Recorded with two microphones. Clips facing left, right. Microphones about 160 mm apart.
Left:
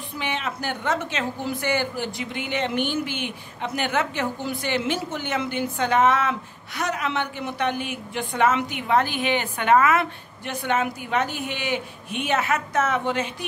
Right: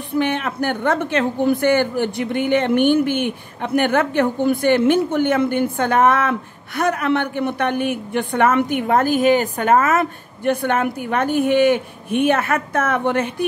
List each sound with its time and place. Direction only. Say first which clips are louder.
0.1 s a woman's voice: right 9 dB; 55° right (ahead or behind)